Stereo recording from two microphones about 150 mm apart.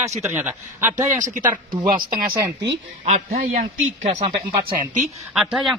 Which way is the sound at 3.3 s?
85° right.